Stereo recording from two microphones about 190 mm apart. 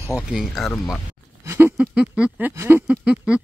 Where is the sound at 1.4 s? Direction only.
10° right (ahead or behind).